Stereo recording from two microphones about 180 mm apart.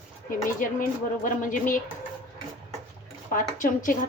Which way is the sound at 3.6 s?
45° left (ahead or behind).